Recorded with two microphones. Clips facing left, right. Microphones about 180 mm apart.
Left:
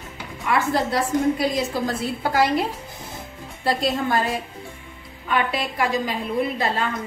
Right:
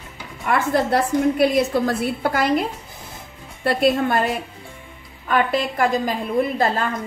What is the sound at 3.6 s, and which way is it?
Speech, 60° right (ahead or behind).